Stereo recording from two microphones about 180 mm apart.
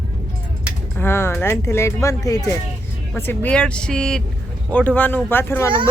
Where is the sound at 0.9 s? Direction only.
15° left (ahead or behind).